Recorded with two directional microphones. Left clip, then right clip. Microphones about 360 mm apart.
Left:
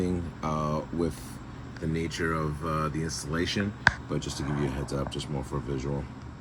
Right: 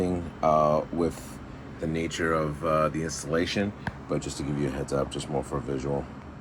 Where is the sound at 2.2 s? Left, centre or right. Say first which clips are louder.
Right 6 dB; centre.